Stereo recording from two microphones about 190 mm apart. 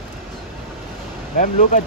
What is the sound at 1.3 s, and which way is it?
Speech, 40° left (ahead or behind).